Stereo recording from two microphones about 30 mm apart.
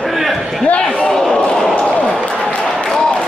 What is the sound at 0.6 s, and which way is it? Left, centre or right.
Slam, left.